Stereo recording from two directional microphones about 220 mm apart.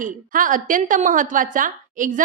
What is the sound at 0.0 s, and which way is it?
A woman's voice, 40° right (ahead or behind).